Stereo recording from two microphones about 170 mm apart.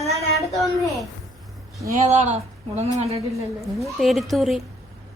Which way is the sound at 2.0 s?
40° right (ahead or behind).